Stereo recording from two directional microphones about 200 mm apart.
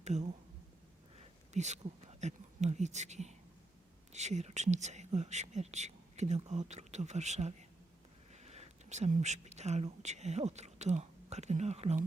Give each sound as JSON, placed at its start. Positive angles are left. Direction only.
{"t": 0.0, "sound": "speech", "side_deg": -35}
{"t": 1.5, "sound": "speech", "side_deg": -35}